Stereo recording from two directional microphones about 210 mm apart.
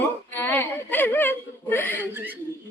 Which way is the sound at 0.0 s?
10° left (ahead or behind).